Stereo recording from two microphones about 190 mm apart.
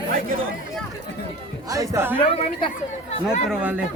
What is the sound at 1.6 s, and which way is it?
Speech, 15° right (ahead or behind).